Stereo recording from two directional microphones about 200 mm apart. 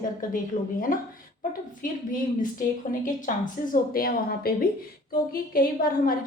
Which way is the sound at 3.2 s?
45° left (ahead or behind).